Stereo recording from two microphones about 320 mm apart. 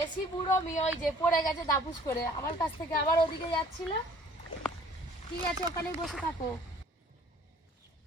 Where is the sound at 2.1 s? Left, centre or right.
Centre.